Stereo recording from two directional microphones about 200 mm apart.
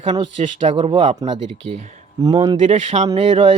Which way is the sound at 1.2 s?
30° right (ahead or behind).